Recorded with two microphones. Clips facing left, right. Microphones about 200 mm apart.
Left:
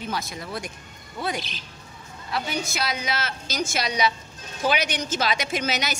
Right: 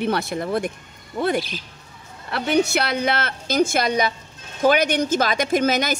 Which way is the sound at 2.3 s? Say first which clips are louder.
Right 9 dB; 60° right (ahead or behind).